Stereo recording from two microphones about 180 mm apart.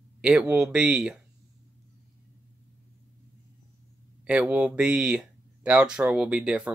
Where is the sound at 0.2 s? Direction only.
5° right (ahead or behind).